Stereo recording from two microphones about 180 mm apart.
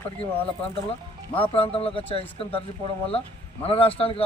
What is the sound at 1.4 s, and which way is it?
Speech, 30° left (ahead or behind).